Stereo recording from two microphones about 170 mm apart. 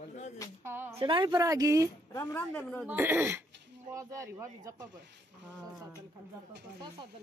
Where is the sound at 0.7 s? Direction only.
15° right (ahead or behind).